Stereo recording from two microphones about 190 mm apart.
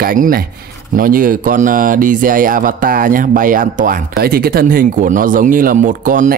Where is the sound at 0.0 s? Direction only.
50° right (ahead or behind).